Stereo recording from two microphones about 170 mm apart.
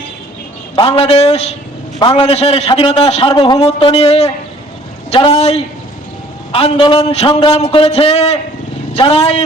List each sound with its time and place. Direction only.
0.8 s a man's voice: 35° left (ahead or behind)